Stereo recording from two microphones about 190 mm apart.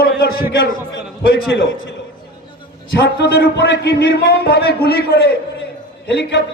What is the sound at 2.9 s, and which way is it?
A man's voice, 60° left (ahead or behind).